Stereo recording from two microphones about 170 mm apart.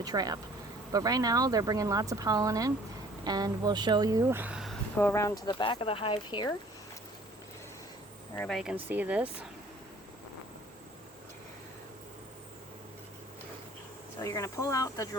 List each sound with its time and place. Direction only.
0.0 s speech: 20° right (ahead or behind); by 4.8 s 5° right (ahead or behind)
4.9 s speech: 15° left (ahead or behind)
5.5 s speech: 30° left (ahead or behind)
8.4 s speech: centre (ahead or behind)
8.7 s speech: 10° right (ahead or behind)
14.2 s speech: 20° left (ahead or behind)